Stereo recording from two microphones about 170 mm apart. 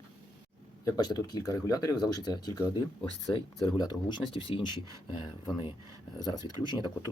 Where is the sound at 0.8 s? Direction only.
25° left (ahead or behind).